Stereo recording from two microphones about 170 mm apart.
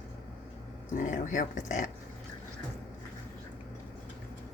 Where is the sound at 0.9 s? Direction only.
45° left (ahead or behind).